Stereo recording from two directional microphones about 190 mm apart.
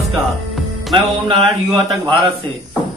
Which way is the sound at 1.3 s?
25° right (ahead or behind).